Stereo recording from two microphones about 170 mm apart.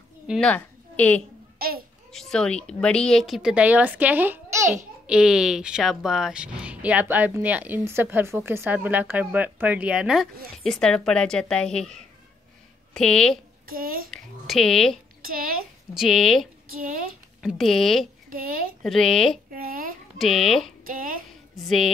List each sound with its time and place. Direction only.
0.3 s a woman's voice: 5° left (ahead or behind)
13.7 s a woman's voice: 60° right (ahead or behind)
14.1 s speech: centre (ahead or behind)
16.0 s speech: centre (ahead or behind)
19.5 s a sound: 60° right (ahead or behind)
20.2 s speech: centre (ahead or behind)
20.8 s a woman's voice: 55° right (ahead or behind)
21.6 s speech: centre (ahead or behind)